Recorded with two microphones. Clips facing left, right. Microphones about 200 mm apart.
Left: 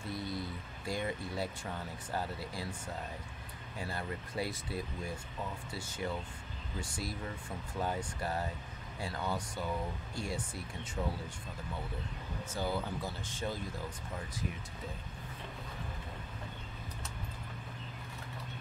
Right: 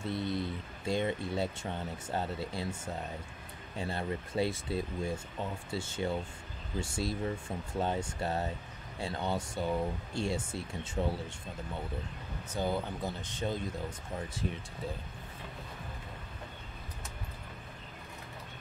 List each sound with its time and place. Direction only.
0.1 s speech: 25° right (ahead or behind)
3.7 s speech: 25° right (ahead or behind)
12.5 s speech: 20° right (ahead or behind)